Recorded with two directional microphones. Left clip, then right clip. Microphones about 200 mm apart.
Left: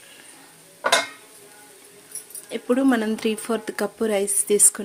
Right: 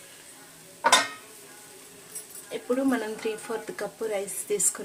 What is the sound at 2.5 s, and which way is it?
Speech, 55° left (ahead or behind).